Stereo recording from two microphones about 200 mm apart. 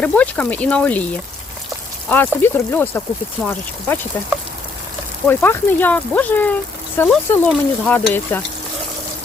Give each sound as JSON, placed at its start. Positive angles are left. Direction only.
{"t": 0.0, "sound": "speech", "side_deg": 5}
{"t": 2.0, "sound": "speech", "side_deg": 10}
{"t": 5.3, "sound": "speech", "side_deg": 10}